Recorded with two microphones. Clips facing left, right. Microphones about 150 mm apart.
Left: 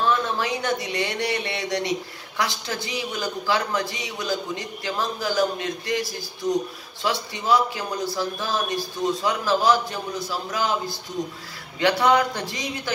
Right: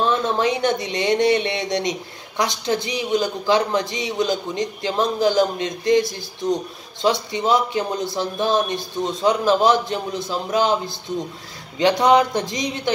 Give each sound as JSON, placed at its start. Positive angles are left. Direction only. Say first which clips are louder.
{"t": 0.0, "sound": "speech", "louder": "right 4 dB", "side_deg": -20}
{"t": 11.8, "sound": "speech", "louder": "right 4 dB", "side_deg": -20}